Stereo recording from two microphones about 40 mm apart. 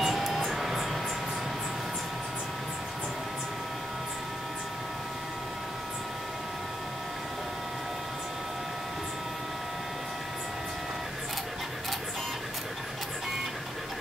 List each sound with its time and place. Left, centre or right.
0.0 s music: centre